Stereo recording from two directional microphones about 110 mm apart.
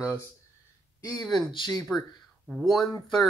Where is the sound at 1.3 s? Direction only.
40° left (ahead or behind).